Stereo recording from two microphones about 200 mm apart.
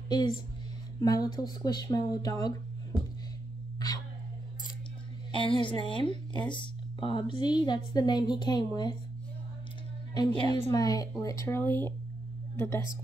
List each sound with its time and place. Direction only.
0.1 s speech: 25° left (ahead or behind)
5.3 s speech: 25° left (ahead or behind)
10.1 s a woman's voice: 20° left (ahead or behind)